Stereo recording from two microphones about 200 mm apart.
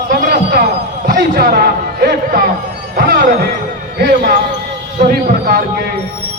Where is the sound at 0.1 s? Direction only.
50° right (ahead or behind).